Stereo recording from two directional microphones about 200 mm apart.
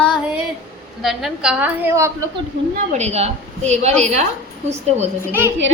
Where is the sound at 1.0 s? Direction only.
5° right (ahead or behind).